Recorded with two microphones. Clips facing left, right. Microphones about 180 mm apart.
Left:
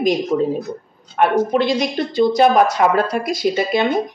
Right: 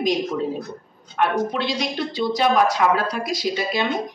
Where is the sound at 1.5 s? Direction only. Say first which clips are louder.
Left 7 dB; 50° left (ahead or behind).